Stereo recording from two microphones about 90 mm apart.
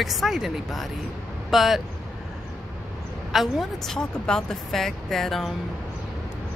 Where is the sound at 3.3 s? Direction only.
5° right (ahead or behind).